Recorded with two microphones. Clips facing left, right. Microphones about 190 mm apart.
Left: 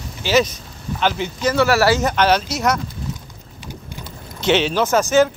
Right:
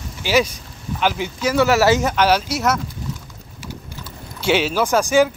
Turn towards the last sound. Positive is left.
turn(degrees=-10)  # may be behind; listen again after turning